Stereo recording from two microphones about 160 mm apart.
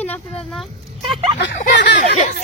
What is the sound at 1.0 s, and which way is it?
Speech, 30° right (ahead or behind).